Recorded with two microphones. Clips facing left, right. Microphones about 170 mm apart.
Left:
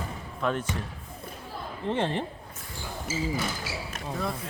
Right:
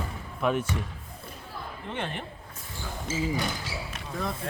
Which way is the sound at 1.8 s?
30° left (ahead or behind).